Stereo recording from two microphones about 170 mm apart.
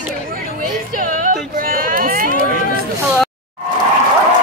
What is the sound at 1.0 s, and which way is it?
Music, 50° right (ahead or behind).